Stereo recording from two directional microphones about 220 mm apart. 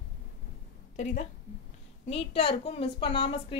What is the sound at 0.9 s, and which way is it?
A woman's voice, 30° left (ahead or behind).